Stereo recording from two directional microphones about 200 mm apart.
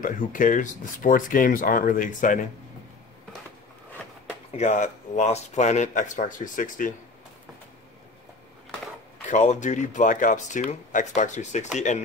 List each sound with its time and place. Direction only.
0.0 s speech: 40° left (ahead or behind)
4.6 s speech: 35° left (ahead or behind)
9.3 s speech: 35° left (ahead or behind)